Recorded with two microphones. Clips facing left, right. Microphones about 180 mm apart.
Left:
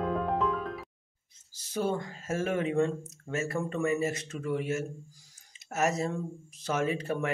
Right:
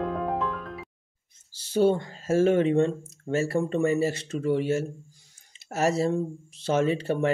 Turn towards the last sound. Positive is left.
turn(degrees=-30)  # may be behind; listen again after turning